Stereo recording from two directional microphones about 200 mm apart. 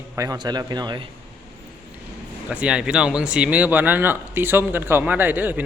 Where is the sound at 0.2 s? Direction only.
20° right (ahead or behind).